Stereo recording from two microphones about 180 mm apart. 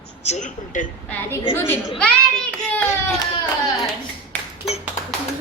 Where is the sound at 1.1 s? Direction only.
10° left (ahead or behind).